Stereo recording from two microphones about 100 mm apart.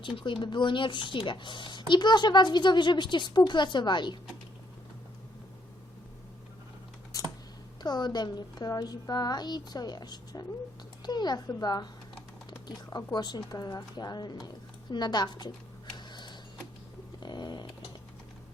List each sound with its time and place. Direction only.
0.0 s a child's voice: 55° left (ahead or behind)
7.1 s typing: 35° left (ahead or behind)
7.8 s a child's voice: 45° left (ahead or behind)
12.5 s typing: 45° left (ahead or behind)
13.1 s a child's voice: 45° left (ahead or behind)
17.2 s a sound: 45° left (ahead or behind)